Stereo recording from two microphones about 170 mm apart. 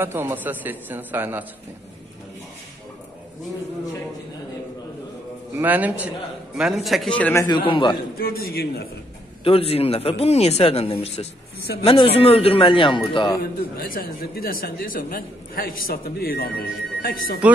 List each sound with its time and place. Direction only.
0.0 s a man's voice: 15° right (ahead or behind)
5.6 s a man's voice: 10° right (ahead or behind); by 7.4 s 10° left (ahead or behind)
7.4 s a man's voice: 30° left (ahead or behind)
8.2 s speech: 65° left (ahead or behind)
9.4 s speech: 35° left (ahead or behind)
13.4 s speech: 55° left (ahead or behind)